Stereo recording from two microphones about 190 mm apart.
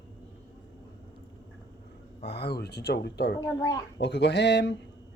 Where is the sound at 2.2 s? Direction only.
60° left (ahead or behind).